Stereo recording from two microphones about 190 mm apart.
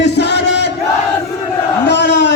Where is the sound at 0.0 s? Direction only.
65° left (ahead or behind).